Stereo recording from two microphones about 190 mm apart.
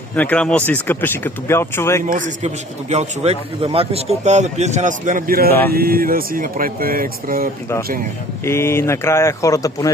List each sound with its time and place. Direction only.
0.2 s speech: 5° left (ahead or behind)
2.0 s speech: 45° right (ahead or behind)
8.4 s speech: 15° left (ahead or behind)